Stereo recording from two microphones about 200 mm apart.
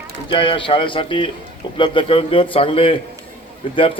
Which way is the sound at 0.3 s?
25° left (ahead or behind).